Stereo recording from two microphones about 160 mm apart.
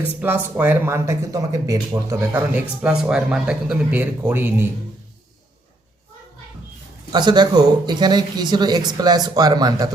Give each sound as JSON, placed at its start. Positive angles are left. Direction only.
{"t": 0.2, "sound": "speech", "side_deg": -10}
{"t": 2.5, "sound": "speech", "side_deg": -10}
{"t": 7.1, "sound": "speech", "side_deg": -25}